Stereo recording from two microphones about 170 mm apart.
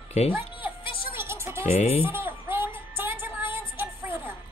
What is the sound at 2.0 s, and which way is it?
Music, 15° right (ahead or behind).